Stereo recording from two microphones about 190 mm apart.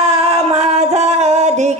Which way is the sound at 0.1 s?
35° right (ahead or behind).